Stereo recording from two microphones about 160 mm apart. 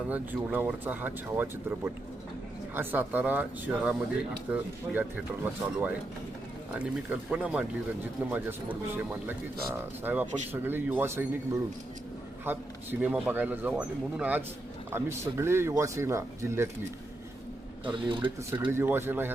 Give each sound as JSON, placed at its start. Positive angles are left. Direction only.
{"t": 0.1, "sound": "speech", "side_deg": -10}
{"t": 12.5, "sound": "speech", "side_deg": -10}
{"t": 17.8, "sound": "speech", "side_deg": -30}
{"t": 18.5, "sound": "speech", "side_deg": -15}